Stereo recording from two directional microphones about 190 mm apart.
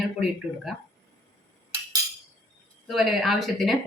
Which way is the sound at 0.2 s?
Centre (ahead or behind).